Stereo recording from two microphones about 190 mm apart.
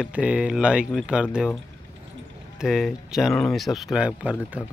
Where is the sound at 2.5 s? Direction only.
Centre (ahead or behind).